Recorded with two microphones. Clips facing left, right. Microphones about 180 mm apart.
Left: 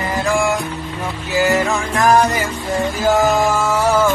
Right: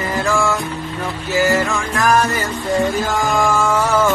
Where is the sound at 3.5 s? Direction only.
10° left (ahead or behind).